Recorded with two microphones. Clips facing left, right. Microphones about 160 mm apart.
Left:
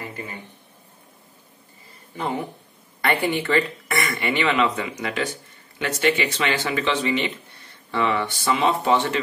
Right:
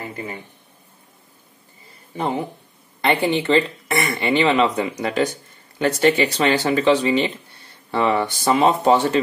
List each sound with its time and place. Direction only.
2.1 s speech: 30° right (ahead or behind)